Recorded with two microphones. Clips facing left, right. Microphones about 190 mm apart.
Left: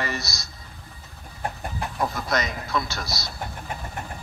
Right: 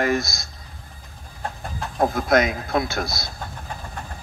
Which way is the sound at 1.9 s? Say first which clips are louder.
Right 8 dB; 50° right (ahead or behind).